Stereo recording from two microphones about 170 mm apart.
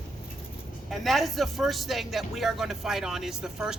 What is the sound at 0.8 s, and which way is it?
Speech, centre (ahead or behind).